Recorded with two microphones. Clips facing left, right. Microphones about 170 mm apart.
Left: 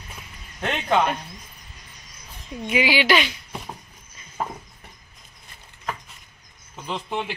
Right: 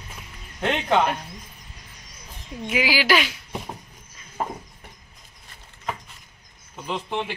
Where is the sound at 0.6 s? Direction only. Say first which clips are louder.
Right 2 dB; 20° right (ahead or behind).